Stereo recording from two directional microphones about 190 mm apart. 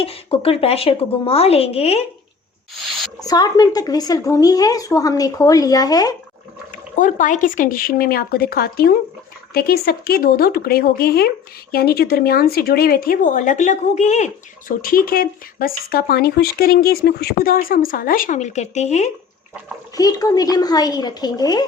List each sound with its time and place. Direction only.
0.0 s a woman's voice: 30° left (ahead or behind)
3.2 s speech: 20° left (ahead or behind)
7.0 s speech: 40° left (ahead or behind)
14.7 s speech: 50° left (ahead or behind)
20.0 s speech: 20° left (ahead or behind)